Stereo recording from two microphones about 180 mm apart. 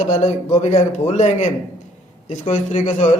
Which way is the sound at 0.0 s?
40° left (ahead or behind).